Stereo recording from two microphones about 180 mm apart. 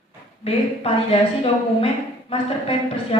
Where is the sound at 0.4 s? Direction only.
35° left (ahead or behind).